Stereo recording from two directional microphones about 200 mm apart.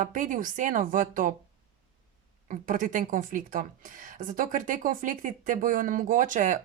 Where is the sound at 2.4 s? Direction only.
40° right (ahead or behind).